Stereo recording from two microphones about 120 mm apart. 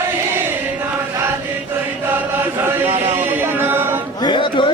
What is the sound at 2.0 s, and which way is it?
Chant, 15° right (ahead or behind).